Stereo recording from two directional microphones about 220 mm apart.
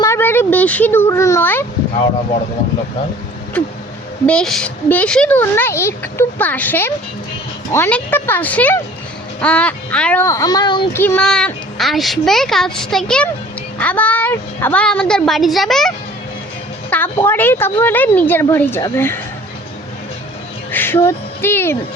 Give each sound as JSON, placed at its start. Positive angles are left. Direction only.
{"t": 0.0, "sound": "speech", "side_deg": 10}
{"t": 4.3, "sound": "a woman's voice", "side_deg": 5}
{"t": 11.0, "sound": "a woman's voice", "side_deg": 5}
{"t": 16.9, "sound": "a woman's voice", "side_deg": 10}
{"t": 20.7, "sound": "speech", "side_deg": 10}